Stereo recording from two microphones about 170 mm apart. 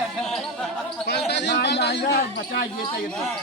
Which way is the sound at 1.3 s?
85° left.